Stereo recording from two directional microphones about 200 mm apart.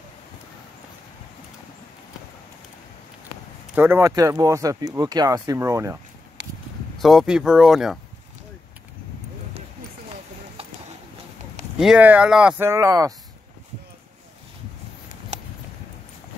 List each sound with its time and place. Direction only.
3.7 s speech: 10° right (ahead or behind)
7.0 s speech: centre (ahead or behind)
11.8 s speech: 5° right (ahead or behind)